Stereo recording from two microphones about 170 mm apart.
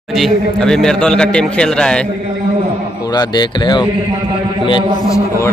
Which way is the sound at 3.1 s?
25° left (ahead or behind).